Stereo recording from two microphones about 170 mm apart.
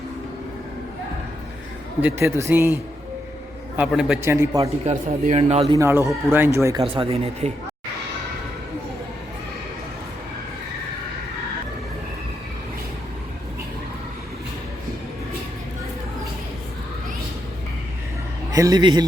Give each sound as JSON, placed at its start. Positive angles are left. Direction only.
{"t": 2.0, "sound": "speech", "side_deg": -10}
{"t": 3.8, "sound": "a man's voice", "side_deg": -5}
{"t": 4.2, "sound": "speech", "side_deg": -15}
{"t": 5.0, "sound": "speech", "side_deg": -45}
{"t": 5.4, "sound": "speech", "side_deg": -35}
{"t": 5.7, "sound": "speech", "side_deg": -15}
{"t": 6.8, "sound": "speech", "side_deg": -30}
{"t": 18.5, "sound": "a man's voice", "side_deg": -20}